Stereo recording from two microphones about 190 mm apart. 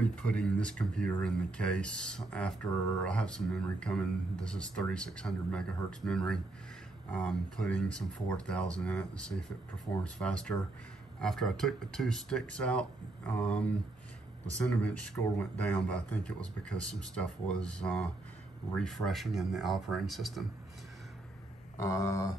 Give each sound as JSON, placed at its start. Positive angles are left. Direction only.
{"t": 0.0, "sound": "speech", "side_deg": 5}
{"t": 10.1, "sound": "speech", "side_deg": 5}
{"t": 14.7, "sound": "speech", "side_deg": 5}
{"t": 21.8, "sound": "a sound", "side_deg": 15}